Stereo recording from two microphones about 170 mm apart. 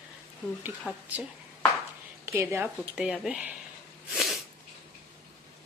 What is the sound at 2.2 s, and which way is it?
Speech, 15° right (ahead or behind).